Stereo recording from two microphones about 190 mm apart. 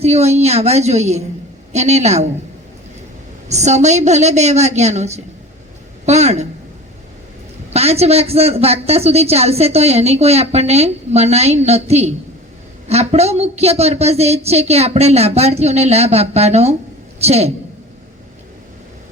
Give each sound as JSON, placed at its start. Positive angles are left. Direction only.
{"t": 0.0, "sound": "a man's voice", "side_deg": -35}
{"t": 3.5, "sound": "a man's voice", "side_deg": -35}
{"t": 7.7, "sound": "a man's voice", "side_deg": -35}